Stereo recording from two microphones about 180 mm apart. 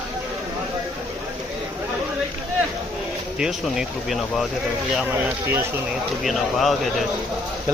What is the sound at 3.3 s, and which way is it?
Speech, 5° right (ahead or behind).